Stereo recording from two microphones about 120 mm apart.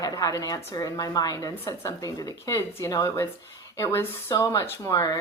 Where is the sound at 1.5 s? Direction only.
20° left (ahead or behind).